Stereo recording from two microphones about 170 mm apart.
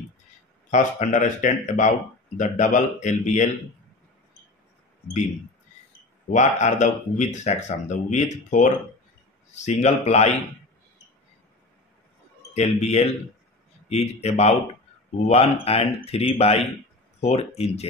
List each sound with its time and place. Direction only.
0.7 s speech: 45° left (ahead or behind)
6.3 s speech: 45° left (ahead or behind)
12.5 s speech: 40° left (ahead or behind)